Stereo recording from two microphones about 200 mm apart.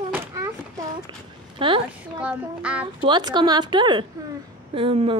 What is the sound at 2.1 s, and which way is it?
Speech, 5° right (ahead or behind).